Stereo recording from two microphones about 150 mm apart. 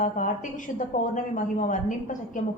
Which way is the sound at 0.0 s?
60° left (ahead or behind).